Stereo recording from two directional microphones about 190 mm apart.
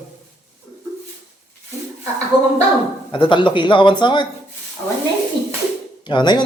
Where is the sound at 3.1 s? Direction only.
25° left (ahead or behind).